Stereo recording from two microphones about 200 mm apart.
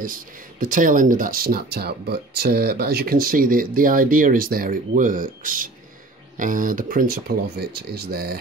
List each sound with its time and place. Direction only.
0.0 s speech: 45° right (ahead or behind)